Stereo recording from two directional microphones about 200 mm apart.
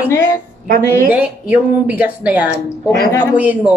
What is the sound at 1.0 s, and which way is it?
Speech, 10° right (ahead or behind).